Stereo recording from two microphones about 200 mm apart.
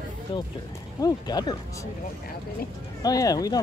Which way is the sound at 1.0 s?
20° left (ahead or behind).